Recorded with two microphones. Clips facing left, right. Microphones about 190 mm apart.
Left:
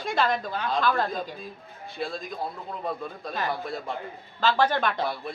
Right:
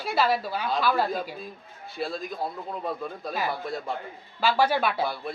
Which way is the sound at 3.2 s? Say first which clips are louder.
Even; 10° right (ahead or behind).